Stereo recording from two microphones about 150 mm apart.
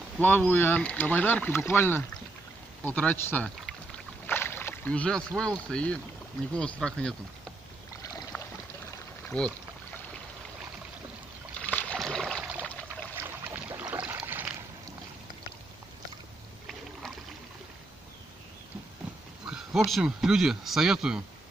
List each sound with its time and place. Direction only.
0.2 s speech: 10° left (ahead or behind)
4.3 s rowboat: 15° left (ahead or behind)
5.4 s speech: 5° left (ahead or behind)
8.0 s rowboat: 20° left (ahead or behind)
9.3 s speech: 10° left (ahead or behind)
11.6 s rowboat: 10° left (ahead or behind)
12.6 s a sound: 10° left (ahead or behind)
13.1 s boat: 15° right (ahead or behind)
19.4 s speech: 5° right (ahead or behind)